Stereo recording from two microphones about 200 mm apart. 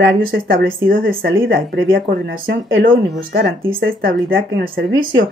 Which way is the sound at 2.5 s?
60° right (ahead or behind).